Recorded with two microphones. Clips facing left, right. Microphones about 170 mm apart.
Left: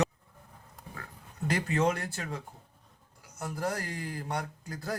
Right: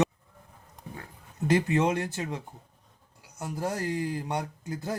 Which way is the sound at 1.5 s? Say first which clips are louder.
Right 4 dB; 20° right (ahead or behind).